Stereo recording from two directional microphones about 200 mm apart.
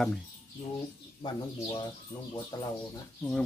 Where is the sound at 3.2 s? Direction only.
5° left (ahead or behind).